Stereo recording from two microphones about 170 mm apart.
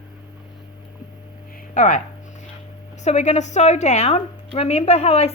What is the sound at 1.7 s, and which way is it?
Speech, 50° left (ahead or behind).